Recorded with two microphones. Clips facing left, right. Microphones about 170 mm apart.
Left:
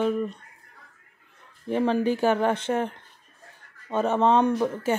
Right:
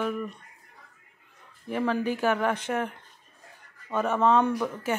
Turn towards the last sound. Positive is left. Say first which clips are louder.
# left 4 dB
turn(degrees=25)  # may be behind; listen again after turning